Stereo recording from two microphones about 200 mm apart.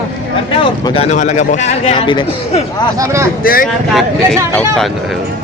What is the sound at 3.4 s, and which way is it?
Speech, 45° left (ahead or behind).